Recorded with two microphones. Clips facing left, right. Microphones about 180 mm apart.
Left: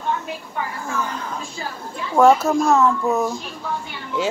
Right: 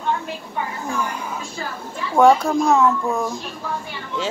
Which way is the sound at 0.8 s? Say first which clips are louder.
Right 1 dB; 10° right (ahead or behind).